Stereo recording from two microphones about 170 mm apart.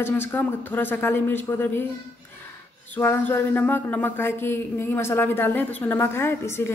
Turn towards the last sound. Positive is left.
turn(degrees=15)  # may be behind; listen again after turning